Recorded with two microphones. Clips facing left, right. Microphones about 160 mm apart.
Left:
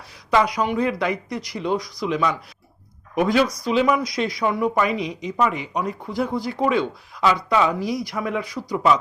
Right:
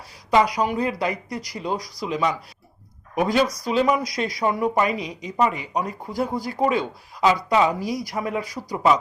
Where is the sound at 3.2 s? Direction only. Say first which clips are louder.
Left 1 dB; 40° right (ahead or behind).